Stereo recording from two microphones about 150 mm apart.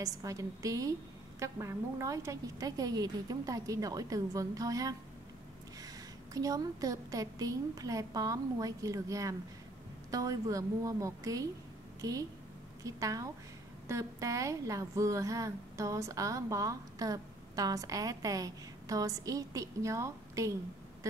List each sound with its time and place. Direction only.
0.0 s a woman's voice: 20° right (ahead or behind)
6.3 s a woman's voice: 25° right (ahead or behind)